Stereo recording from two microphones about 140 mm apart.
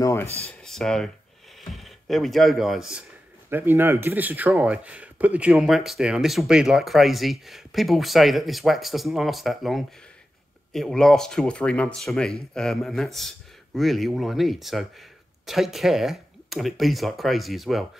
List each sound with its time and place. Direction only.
0.0 s a sound: 20° left (ahead or behind)
0.5 s speech: 5° left (ahead or behind)
3.4 s a man's voice: 15° right (ahead or behind)